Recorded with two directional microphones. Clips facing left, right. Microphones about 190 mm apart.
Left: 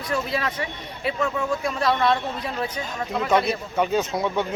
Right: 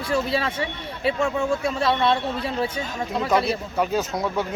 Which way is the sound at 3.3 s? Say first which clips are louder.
Left 1 dB; centre (ahead or behind).